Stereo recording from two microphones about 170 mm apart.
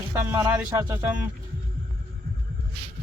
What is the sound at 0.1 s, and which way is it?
Music, 15° right (ahead or behind).